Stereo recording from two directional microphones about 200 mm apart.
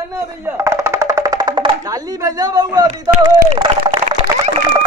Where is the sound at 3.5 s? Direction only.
30° right (ahead or behind).